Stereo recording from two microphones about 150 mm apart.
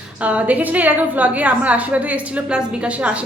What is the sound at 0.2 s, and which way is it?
A woman's voice, 10° right (ahead or behind).